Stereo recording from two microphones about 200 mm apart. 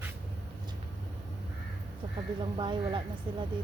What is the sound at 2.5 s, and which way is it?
Speech, 25° right (ahead or behind).